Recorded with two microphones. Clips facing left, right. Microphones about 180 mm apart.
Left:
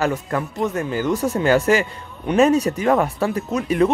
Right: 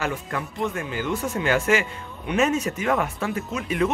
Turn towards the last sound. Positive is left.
turn(degrees=40)  # may be behind; listen again after turning